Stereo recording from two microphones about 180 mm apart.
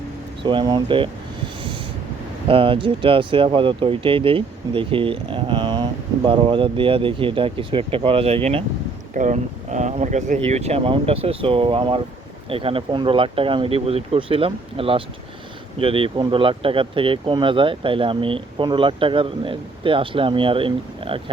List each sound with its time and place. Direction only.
0.4 s speech: 25° right (ahead or behind)
2.5 s speech: 30° right (ahead or behind)